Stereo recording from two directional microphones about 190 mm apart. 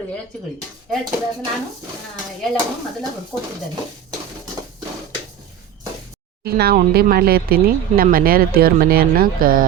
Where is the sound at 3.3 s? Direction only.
5° left (ahead or behind).